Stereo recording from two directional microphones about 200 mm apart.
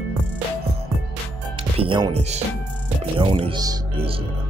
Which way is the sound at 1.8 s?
25° right (ahead or behind).